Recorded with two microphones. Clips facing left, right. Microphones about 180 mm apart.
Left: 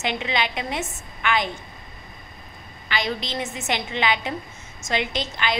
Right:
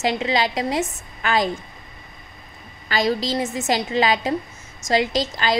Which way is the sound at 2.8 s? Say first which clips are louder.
Right 6 dB; 40° right (ahead or behind).